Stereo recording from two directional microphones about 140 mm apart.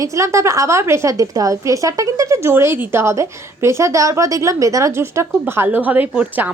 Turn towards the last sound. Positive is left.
turn(degrees=-10)  # may be behind; listen again after turning